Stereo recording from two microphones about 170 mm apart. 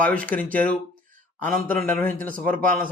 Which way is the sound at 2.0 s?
55° right (ahead or behind).